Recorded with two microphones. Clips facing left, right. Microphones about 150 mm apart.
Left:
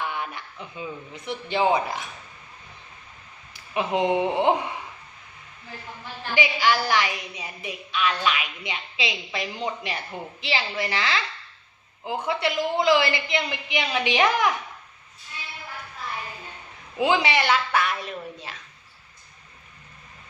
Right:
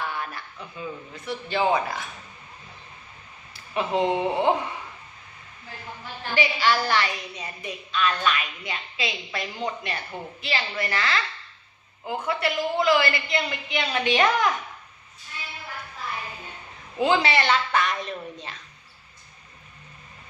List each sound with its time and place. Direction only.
0.0 s a man's voice: 20° left (ahead or behind)
3.5 s speech: 15° left (ahead or behind)
6.3 s a woman's voice: 10° left (ahead or behind)
17.0 s a woman's voice: 15° left (ahead or behind)